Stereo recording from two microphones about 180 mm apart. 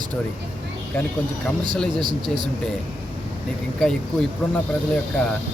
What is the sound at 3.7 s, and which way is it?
Speech, 5° left (ahead or behind).